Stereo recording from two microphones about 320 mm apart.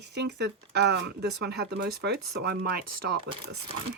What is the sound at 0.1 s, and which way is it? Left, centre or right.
Speech, right.